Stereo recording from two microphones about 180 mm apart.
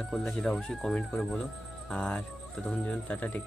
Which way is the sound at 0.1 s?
5° left (ahead or behind).